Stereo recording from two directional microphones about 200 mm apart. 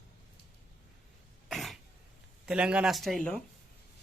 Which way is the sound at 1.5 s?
Centre (ahead or behind).